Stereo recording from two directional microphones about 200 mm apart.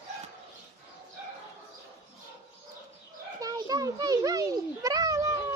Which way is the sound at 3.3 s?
15° right (ahead or behind).